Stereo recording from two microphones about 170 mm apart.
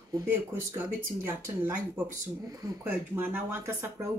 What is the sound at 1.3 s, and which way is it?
Speech, 15° right (ahead or behind).